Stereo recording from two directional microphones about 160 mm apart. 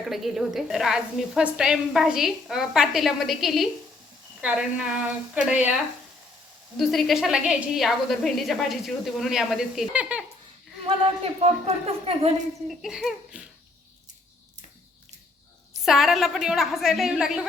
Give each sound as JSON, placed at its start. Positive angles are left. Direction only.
{"t": 0.0, "sound": "a woman's voice", "side_deg": 0}
{"t": 6.7, "sound": "a woman's voice", "side_deg": 0}
{"t": 10.8, "sound": "speech", "side_deg": -35}
{"t": 12.6, "sound": "a woman's voice", "side_deg": 0}
{"t": 15.8, "sound": "a woman's voice", "side_deg": 0}